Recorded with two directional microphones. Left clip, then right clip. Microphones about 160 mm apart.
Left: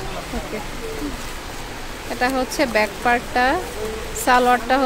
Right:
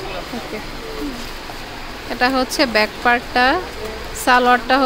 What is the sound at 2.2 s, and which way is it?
Speech, 20° right (ahead or behind).